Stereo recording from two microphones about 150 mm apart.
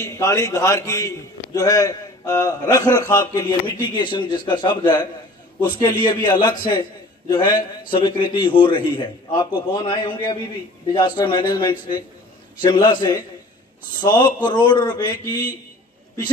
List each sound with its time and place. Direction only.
0.0 s a man's voice: 20° left (ahead or behind)